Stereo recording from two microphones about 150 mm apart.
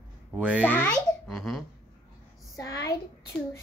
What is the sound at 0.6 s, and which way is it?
Speech, 15° left (ahead or behind).